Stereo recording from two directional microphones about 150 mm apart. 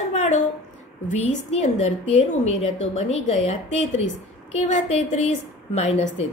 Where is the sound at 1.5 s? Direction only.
50° left (ahead or behind).